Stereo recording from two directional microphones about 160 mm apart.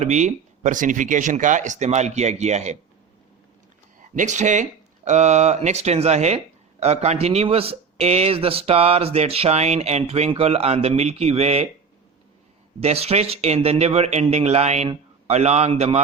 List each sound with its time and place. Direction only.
0.0 s speech: 45° right (ahead or behind)
4.1 s speech: 50° right (ahead or behind)
12.8 s speech: 40° right (ahead or behind)